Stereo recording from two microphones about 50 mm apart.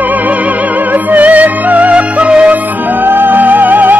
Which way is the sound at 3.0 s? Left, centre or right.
Right.